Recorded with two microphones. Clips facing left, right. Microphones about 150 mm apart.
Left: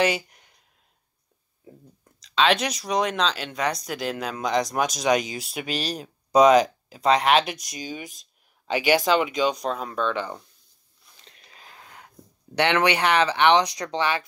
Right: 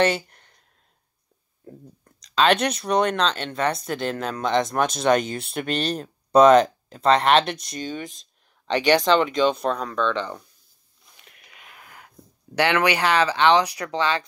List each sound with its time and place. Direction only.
0.0 s a sound: 10° left (ahead or behind)
2.3 s speech: centre (ahead or behind)
11.1 s whispering: 30° left (ahead or behind)
12.5 s speech: 25° left (ahead or behind)